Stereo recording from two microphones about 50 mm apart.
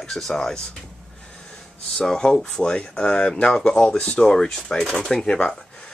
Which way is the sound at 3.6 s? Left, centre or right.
Centre.